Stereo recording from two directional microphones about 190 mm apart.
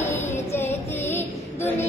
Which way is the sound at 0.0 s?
10° left (ahead or behind).